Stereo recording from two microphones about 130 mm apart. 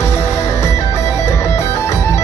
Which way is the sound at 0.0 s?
20° left (ahead or behind).